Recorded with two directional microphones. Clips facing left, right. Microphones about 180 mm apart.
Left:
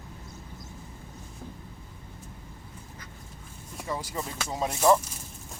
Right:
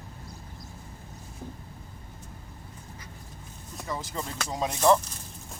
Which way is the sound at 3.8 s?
10° left (ahead or behind).